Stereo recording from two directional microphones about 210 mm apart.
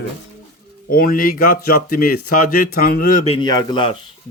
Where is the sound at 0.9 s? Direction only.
45° left (ahead or behind).